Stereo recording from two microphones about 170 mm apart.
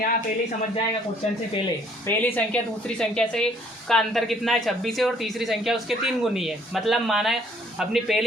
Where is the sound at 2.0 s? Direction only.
10° left (ahead or behind).